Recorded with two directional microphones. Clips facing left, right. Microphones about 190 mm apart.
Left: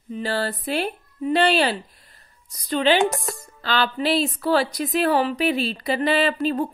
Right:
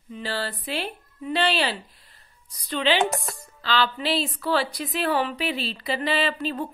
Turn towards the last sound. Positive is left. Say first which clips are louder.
# left 5 dB
turn(degrees=45)  # may be behind; listen again after turning